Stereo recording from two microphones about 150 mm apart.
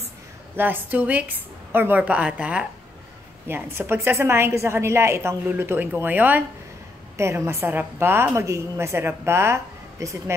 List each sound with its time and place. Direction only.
0.6 s a woman's voice: 10° right (ahead or behind)